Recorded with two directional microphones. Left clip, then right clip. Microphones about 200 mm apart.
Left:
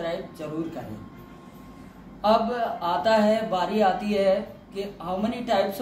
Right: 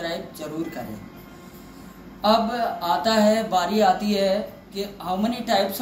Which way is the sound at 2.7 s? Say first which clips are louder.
Even; 15° left (ahead or behind).